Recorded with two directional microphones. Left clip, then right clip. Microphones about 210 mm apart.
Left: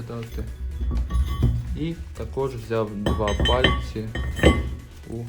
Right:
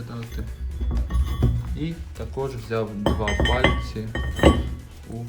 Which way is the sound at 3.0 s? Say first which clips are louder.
Even; 5° right (ahead or behind).